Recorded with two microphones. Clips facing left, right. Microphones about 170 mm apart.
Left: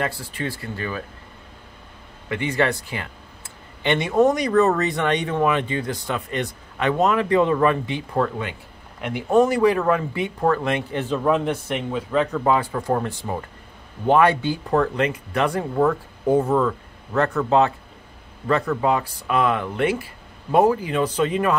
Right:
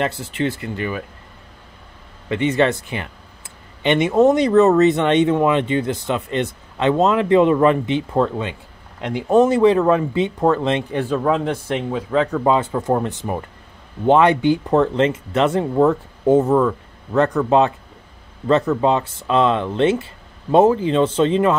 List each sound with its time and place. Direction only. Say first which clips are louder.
0.0 s speech: right 5 dB; 25° right (ahead or behind)
2.2 s speech: right 5 dB; 20° right (ahead or behind)
11.3 s speech: right 1 dB; 10° left (ahead or behind)
11.9 s speech: right 2 dB; 15° right (ahead or behind)